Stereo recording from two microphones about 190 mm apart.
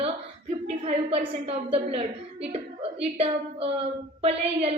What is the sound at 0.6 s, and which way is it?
A woman's voice, 30° right (ahead or behind).